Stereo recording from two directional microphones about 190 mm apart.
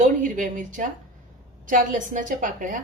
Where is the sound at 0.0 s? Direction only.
45° right (ahead or behind).